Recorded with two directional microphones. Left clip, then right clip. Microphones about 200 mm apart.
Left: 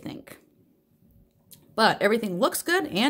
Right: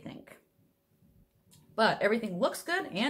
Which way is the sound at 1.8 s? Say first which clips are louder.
Left 5 dB; 65° left (ahead or behind).